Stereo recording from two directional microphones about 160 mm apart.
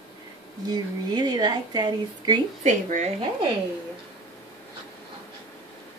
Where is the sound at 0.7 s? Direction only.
25° right (ahead or behind).